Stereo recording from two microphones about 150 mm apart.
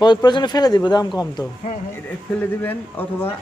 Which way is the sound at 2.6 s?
10° left (ahead or behind).